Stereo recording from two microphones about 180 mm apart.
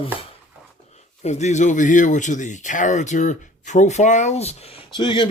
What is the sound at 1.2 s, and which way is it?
Speech, 40° left (ahead or behind).